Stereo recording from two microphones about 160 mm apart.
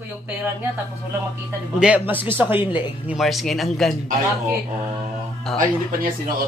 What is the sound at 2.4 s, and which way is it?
Speech, 10° right (ahead or behind).